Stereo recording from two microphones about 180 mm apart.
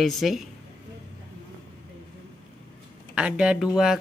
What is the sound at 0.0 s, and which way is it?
Speech, centre (ahead or behind).